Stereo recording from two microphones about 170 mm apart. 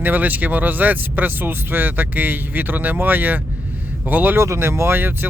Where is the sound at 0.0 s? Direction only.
10° right (ahead or behind).